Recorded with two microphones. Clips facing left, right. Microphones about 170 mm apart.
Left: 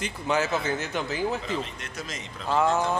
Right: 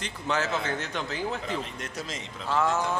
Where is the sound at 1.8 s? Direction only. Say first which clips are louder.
Right 1 dB; 35° right (ahead or behind).